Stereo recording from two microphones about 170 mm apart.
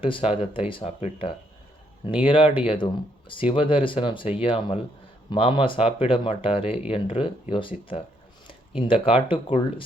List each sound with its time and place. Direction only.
0.0 s speech: 30° left (ahead or behind)